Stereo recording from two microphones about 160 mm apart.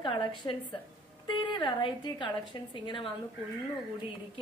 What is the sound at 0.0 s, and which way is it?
A woman's voice, 30° left (ahead or behind).